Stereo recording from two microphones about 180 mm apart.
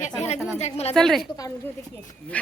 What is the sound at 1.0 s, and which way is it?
Speech, centre (ahead or behind).